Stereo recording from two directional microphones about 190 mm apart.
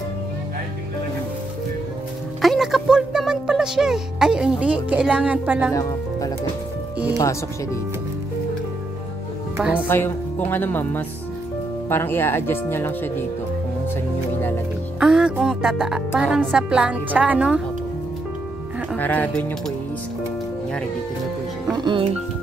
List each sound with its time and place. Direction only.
2.4 s music: centre (ahead or behind)
5.7 s speech: 15° left (ahead or behind)
9.6 s speech: 5° right (ahead or behind)
9.8 s speech: 10° left (ahead or behind)
15.0 s a woman's voice: 5° right (ahead or behind)
18.9 s speech: 10° left (ahead or behind)
21.7 s speech: 25° right (ahead or behind)